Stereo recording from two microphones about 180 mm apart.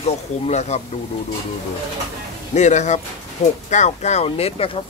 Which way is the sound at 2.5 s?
40° left (ahead or behind).